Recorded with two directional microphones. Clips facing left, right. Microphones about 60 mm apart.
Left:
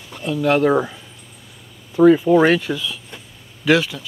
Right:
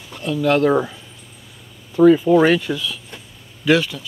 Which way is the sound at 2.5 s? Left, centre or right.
Left.